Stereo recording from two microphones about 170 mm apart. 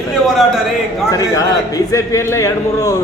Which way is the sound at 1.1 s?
20° left (ahead or behind).